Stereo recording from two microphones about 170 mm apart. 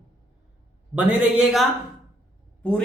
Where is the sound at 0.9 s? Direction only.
10° right (ahead or behind).